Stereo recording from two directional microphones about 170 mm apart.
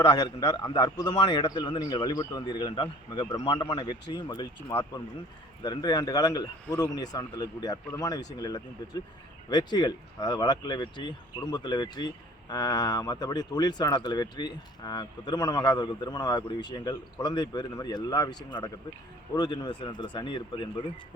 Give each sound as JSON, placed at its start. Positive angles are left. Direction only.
{"t": 0.0, "sound": "speech", "side_deg": 25}